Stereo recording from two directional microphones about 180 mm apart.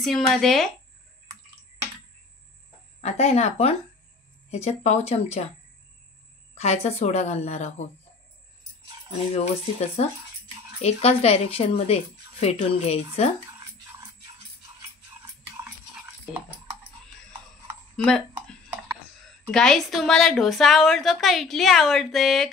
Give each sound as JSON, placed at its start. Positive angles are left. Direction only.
{"t": 0.0, "sound": "a woman's voice", "side_deg": 0}
{"t": 3.0, "sound": "speech", "side_deg": 40}
{"t": 6.5, "sound": "speech", "side_deg": 40}
{"t": 9.3, "sound": "speech", "side_deg": 35}
{"t": 16.3, "sound": "a woman's voice", "side_deg": -5}
{"t": 17.9, "sound": "a sound", "side_deg": 5}
{"t": 19.5, "sound": "a woman's voice", "side_deg": 5}